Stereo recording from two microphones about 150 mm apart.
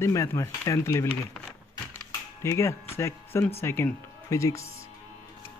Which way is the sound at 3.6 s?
15° left (ahead or behind).